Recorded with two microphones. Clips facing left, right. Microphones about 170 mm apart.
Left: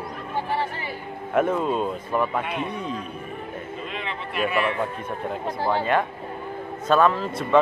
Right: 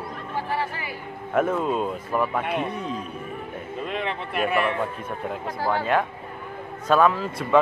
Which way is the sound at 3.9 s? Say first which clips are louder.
Right 3 dB; 55° right (ahead or behind).